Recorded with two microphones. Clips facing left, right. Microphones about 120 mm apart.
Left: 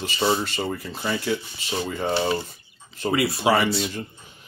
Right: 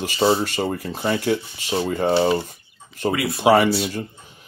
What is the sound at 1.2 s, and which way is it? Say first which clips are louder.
Speech: right 4 dB; 45° right (ahead or behind).